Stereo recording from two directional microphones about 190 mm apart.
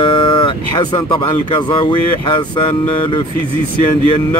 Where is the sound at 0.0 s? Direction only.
25° left (ahead or behind).